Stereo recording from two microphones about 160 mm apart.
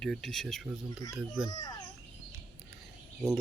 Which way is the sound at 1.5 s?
25° left (ahead or behind).